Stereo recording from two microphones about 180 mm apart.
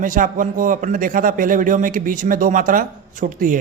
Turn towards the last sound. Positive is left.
turn(degrees=-45)  # may be behind; listen again after turning